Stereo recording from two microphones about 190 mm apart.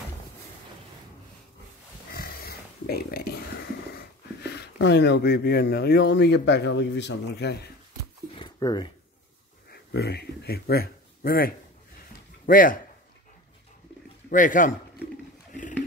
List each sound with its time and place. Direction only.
2.1 s speech: 55° left (ahead or behind)
8.4 s a sound: 20° left (ahead or behind)
9.7 s a man's voice: 60° left (ahead or behind)
14.3 s a man's voice: 45° left (ahead or behind)